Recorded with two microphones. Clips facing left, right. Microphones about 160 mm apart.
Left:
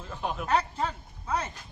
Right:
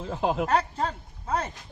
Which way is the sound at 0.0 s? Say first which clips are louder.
Right 7 dB; 90° right.